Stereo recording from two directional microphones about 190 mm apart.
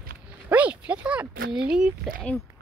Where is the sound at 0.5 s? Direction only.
5° right (ahead or behind).